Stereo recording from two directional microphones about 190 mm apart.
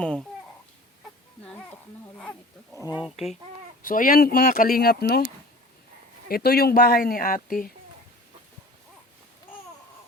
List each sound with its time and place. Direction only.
0.0 s babbling: 5° left (ahead or behind)
1.5 s speech: 5° left (ahead or behind)
3.8 s speech: 50° left (ahead or behind)
6.2 s speech: 55° left (ahead or behind)